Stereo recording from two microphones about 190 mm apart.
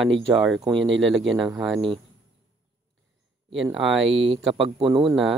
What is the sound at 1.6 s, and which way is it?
Speech, centre (ahead or behind).